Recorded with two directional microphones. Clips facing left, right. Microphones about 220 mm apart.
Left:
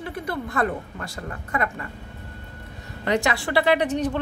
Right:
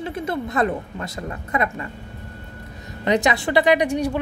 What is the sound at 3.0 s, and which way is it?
A woman's voice, 20° right (ahead or behind).